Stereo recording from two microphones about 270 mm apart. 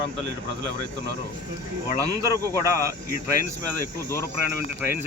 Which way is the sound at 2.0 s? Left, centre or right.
Centre.